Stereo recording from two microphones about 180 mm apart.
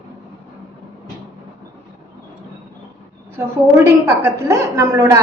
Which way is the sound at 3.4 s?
15° right (ahead or behind).